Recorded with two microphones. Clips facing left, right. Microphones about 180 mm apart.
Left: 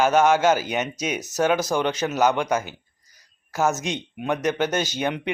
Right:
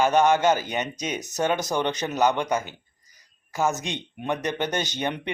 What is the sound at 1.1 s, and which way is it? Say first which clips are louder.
Speech: left 3 dB; 15° right (ahead or behind).